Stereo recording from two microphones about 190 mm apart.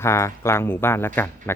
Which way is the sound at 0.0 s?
15° left (ahead or behind).